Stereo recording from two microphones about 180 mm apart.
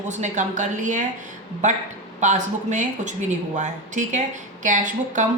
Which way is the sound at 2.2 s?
40° right (ahead or behind).